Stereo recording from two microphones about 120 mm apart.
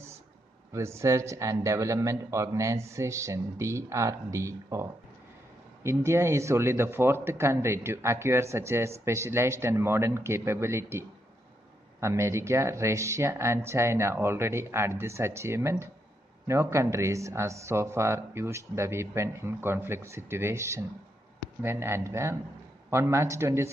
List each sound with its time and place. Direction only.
0.7 s speech: 25° right (ahead or behind)
5.9 s speech: 25° right (ahead or behind)